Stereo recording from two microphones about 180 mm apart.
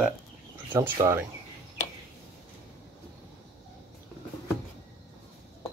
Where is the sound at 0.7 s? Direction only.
15° right (ahead or behind).